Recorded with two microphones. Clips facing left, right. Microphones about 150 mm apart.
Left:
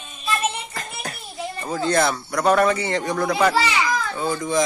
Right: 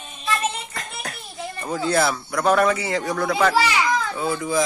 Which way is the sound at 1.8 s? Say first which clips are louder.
Left 1 dB; 5° right (ahead or behind).